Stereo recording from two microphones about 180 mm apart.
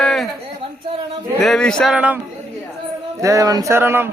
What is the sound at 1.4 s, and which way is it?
Mantra, 5° left (ahead or behind).